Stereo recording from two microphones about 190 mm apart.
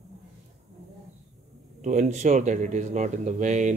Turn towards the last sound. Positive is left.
turn(degrees=-40)  # may be behind; listen again after turning